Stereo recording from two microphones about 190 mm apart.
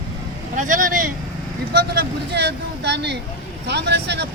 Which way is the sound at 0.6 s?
45° right (ahead or behind).